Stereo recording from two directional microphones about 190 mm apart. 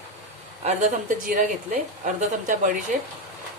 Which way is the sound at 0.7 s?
40° right (ahead or behind).